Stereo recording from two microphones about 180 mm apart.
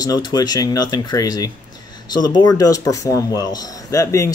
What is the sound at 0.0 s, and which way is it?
A man's voice, 20° left (ahead or behind).